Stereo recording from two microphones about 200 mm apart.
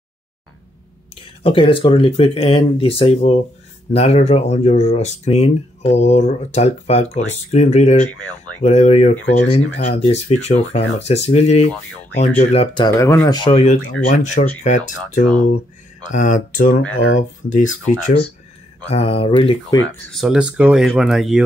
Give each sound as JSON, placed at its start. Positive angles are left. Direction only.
{"t": 1.4, "sound": "speech", "side_deg": 25}
{"t": 16.9, "sound": "speech", "side_deg": 85}
{"t": 18.9, "sound": "speech", "side_deg": 30}
{"t": 20.1, "sound": "speech", "side_deg": 0}